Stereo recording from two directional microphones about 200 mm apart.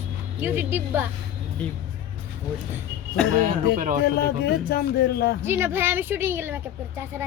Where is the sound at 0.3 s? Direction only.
10° right (ahead or behind).